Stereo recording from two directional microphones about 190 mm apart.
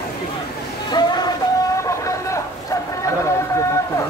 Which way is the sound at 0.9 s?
20° left (ahead or behind).